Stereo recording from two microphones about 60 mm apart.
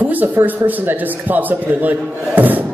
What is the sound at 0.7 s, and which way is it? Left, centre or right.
A man's voice, right.